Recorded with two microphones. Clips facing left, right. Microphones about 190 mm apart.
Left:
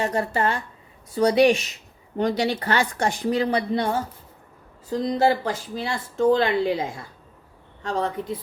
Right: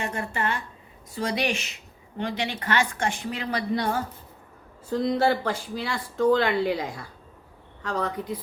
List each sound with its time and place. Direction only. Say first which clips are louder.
0.0 s a woman's voice: left 6 dB; 35° left (ahead or behind)